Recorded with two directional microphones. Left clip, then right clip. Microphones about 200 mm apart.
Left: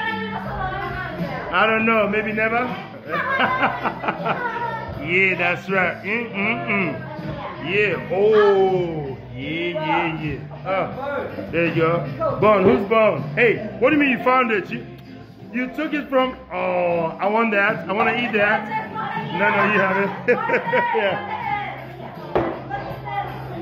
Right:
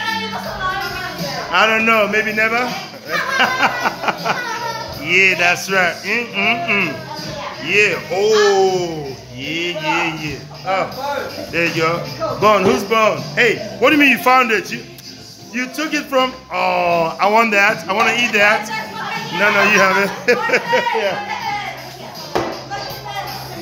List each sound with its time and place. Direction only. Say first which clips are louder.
1.5 s speech: right 4 dB; 15° right (ahead or behind)
3.1 s a sound: right 4 dB; 20° right (ahead or behind)
5.0 s speech: right 6 dB; 25° right (ahead or behind)
13.7 s speech: right 9 dB; 35° right (ahead or behind); by 16.6 s 15° right (ahead or behind)
16.6 s speech: right 5 dB; 30° right (ahead or behind)
19.4 s speech: right 6 dB; 35° right (ahead or behind)